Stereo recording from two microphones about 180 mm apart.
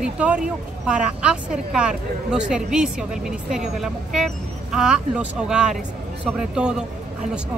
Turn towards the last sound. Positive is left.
turn(degrees=-5)  # may be behind; listen again after turning